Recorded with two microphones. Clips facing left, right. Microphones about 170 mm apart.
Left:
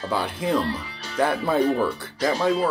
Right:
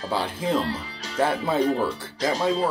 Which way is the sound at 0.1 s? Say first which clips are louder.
Left 1 dB; 30° right (ahead or behind).